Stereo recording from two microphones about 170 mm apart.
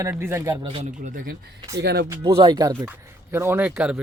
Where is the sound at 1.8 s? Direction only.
80° right.